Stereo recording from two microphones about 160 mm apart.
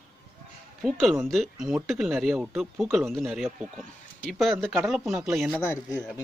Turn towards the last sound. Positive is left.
turn(degrees=15)  # may be behind; listen again after turning